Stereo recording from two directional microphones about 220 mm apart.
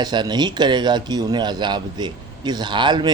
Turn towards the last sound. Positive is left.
turn(degrees=-20)  # may be behind; listen again after turning